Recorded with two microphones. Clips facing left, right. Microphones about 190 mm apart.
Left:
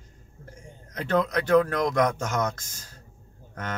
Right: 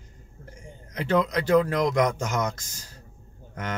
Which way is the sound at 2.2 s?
10° right (ahead or behind).